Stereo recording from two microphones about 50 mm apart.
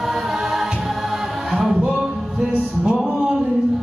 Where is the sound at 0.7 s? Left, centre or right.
Centre.